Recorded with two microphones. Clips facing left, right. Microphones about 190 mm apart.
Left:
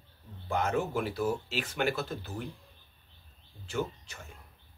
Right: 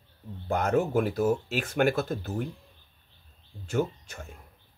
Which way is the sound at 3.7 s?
50° right (ahead or behind).